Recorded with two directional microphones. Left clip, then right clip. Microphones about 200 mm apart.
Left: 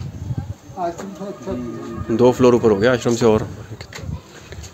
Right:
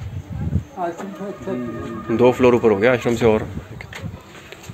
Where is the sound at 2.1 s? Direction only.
25° left (ahead or behind).